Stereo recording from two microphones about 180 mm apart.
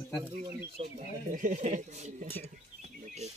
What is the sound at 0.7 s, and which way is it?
Speech, 45° right (ahead or behind).